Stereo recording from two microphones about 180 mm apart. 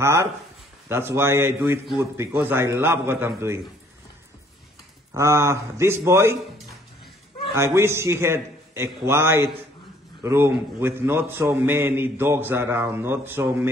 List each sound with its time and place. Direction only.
0.0 s a man's voice: 15° right (ahead or behind)
5.1 s a man's voice: 15° right (ahead or behind)
7.5 s a man's voice: 15° right (ahead or behind)